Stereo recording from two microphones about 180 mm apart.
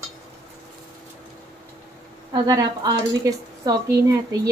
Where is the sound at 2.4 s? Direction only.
20° right (ahead or behind).